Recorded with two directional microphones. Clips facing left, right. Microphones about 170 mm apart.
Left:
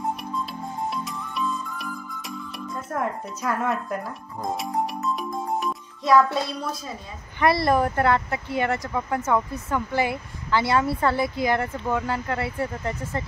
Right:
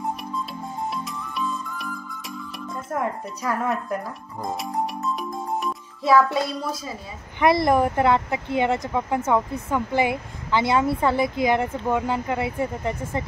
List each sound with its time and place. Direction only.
0.2 s music: centre (ahead or behind)
7.3 s speech: 20° right (ahead or behind)